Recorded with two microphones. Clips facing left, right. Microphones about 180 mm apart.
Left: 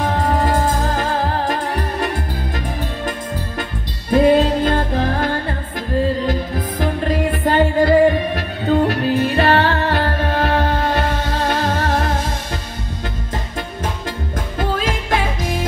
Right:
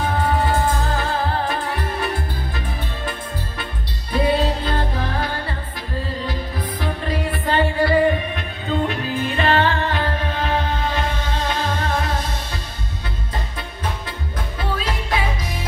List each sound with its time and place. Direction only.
0.0 s music: 40° left (ahead or behind)
4.1 s music: 45° left (ahead or behind)
14.6 s music: 45° left (ahead or behind)